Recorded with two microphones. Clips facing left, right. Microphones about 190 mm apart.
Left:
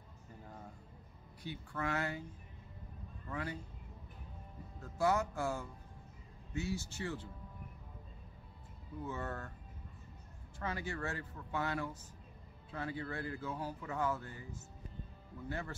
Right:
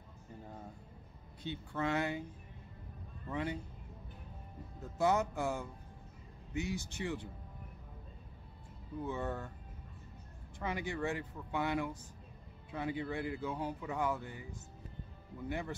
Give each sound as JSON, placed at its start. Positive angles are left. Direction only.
{"t": 1.4, "sound": "speech", "side_deg": -25}
{"t": 3.3, "sound": "speech", "side_deg": -20}
{"t": 4.7, "sound": "speech", "side_deg": -20}
{"t": 9.0, "sound": "speech", "side_deg": -15}
{"t": 10.6, "sound": "speech", "side_deg": -15}